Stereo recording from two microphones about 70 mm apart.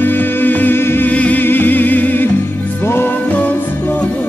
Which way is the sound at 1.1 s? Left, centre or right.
Left.